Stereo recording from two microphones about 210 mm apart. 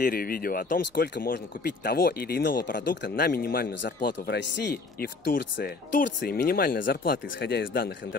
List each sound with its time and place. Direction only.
0.0 s speech: 45° left (ahead or behind)
3.8 s speech: 55° left (ahead or behind)